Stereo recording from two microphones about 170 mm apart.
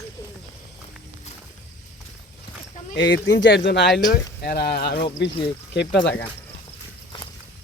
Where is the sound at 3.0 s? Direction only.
90° left.